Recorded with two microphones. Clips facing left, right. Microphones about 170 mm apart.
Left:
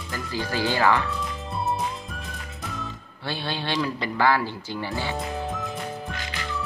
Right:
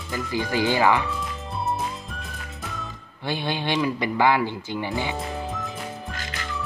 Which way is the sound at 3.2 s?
15° right (ahead or behind).